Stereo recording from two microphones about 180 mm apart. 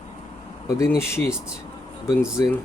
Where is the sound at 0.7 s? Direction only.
15° left (ahead or behind).